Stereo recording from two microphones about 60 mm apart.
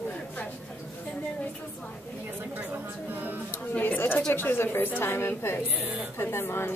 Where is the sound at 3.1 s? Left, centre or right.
Right.